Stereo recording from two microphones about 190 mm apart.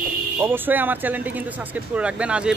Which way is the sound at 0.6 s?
10° right (ahead or behind).